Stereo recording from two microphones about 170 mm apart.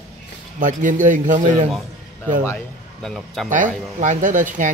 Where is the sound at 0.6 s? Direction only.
50° right (ahead or behind).